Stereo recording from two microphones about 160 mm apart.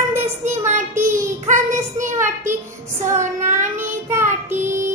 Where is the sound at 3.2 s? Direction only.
50° right (ahead or behind).